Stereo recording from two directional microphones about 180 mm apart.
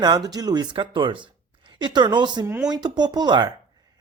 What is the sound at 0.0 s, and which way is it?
Speech, 20° right (ahead or behind).